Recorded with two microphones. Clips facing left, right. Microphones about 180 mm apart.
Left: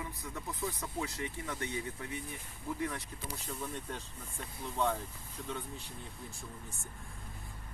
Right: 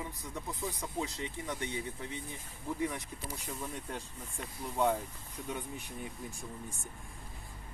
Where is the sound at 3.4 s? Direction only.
10° right (ahead or behind).